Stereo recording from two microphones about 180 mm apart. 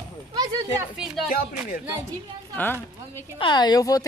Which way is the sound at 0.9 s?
5° right (ahead or behind).